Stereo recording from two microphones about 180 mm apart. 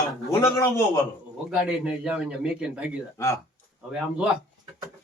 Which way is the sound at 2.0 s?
5° right (ahead or behind).